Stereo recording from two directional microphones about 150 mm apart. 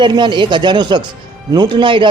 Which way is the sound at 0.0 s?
30° right (ahead or behind).